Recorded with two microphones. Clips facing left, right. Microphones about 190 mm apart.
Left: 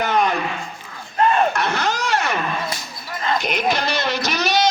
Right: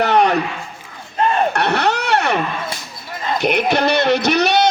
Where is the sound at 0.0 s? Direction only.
70° right (ahead or behind).